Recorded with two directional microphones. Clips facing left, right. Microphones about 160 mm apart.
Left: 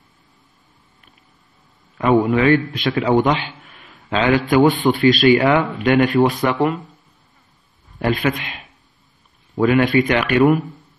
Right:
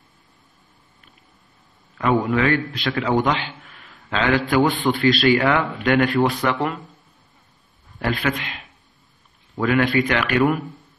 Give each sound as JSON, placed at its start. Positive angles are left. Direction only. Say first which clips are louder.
{"t": 2.0, "sound": "a man's voice", "louder": "left 4 dB", "side_deg": 20}
{"t": 8.0, "sound": "a man's voice", "louder": "left 4 dB", "side_deg": 20}